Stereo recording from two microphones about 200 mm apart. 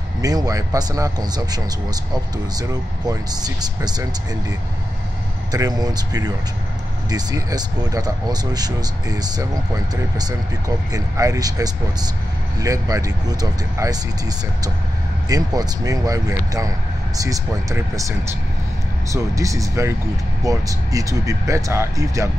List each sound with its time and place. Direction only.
0.2 s speech: 20° right (ahead or behind)
5.5 s speech: 20° right (ahead or behind)
10.9 s speech: 15° right (ahead or behind)
15.2 s speech: 20° right (ahead or behind)
19.1 s speech: 15° right (ahead or behind)